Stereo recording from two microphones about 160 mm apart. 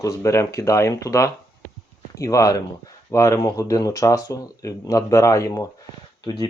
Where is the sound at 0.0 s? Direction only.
20° left (ahead or behind).